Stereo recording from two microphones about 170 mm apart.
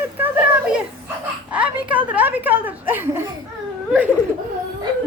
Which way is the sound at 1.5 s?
5° right (ahead or behind).